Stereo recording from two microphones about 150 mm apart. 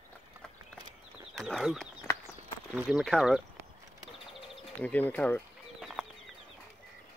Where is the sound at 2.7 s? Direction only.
Centre (ahead or behind).